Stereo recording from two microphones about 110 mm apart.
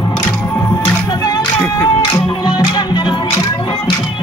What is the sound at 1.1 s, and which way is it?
Music, 35° left (ahead or behind).